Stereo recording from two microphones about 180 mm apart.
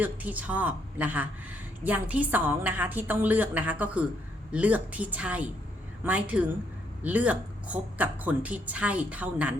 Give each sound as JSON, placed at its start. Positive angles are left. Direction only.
{"t": 0.0, "sound": "speech", "side_deg": -10}